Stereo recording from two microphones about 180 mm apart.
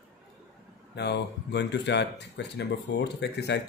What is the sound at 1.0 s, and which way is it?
Speech, 70° left (ahead or behind).